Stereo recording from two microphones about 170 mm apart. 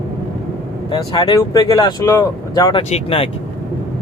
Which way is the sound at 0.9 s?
25° left (ahead or behind).